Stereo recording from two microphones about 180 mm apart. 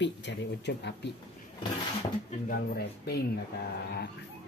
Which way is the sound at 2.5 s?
60° left (ahead or behind).